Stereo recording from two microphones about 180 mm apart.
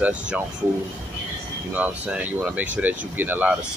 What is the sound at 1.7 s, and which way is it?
Speech, 10° right (ahead or behind).